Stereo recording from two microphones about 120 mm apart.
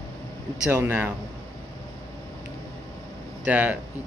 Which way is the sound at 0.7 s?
15° right (ahead or behind).